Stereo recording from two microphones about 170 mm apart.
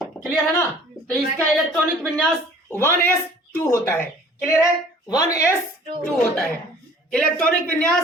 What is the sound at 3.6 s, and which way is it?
Speech, 15° left (ahead or behind).